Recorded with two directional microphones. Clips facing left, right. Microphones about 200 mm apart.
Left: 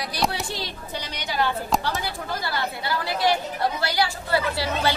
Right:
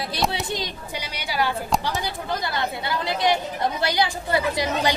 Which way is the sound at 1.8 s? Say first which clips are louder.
Right 1 dB; 15° right (ahead or behind).